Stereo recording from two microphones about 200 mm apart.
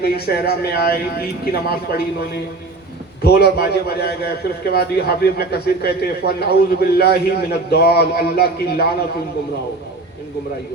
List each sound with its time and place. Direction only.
0.0 s a man's voice: 50° left (ahead or behind)